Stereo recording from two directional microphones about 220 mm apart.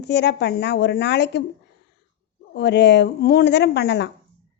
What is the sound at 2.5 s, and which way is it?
A woman's voice, 50° left (ahead or behind).